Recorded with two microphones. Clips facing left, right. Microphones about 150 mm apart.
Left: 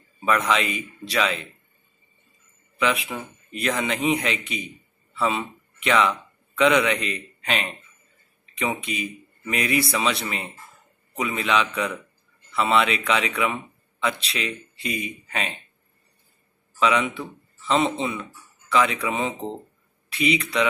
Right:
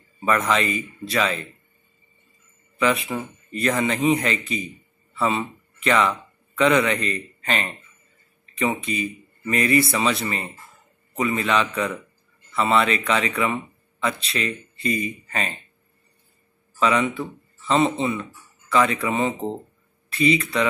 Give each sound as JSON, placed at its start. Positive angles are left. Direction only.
{"t": 0.2, "sound": "speech", "side_deg": 0}
{"t": 2.8, "sound": "a man's voice", "side_deg": 0}
{"t": 16.8, "sound": "speech", "side_deg": 0}